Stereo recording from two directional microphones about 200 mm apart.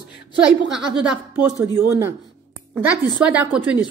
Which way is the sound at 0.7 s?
5° right (ahead or behind).